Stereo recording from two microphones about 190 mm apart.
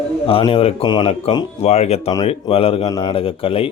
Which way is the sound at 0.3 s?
30° left (ahead or behind).